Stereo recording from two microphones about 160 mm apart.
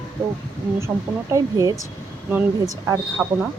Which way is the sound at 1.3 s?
20° right (ahead or behind).